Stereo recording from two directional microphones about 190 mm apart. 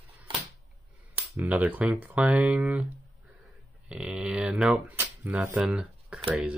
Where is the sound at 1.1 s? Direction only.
10° right (ahead or behind).